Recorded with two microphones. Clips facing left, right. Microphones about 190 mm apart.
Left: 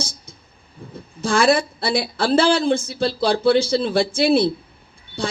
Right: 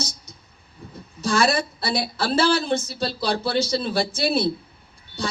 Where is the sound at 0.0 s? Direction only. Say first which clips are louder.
Even; 55° left (ahead or behind).